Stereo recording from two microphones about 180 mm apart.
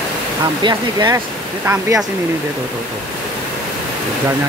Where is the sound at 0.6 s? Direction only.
20° right (ahead or behind).